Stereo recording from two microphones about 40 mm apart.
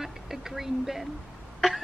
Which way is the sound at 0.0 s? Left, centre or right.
Centre.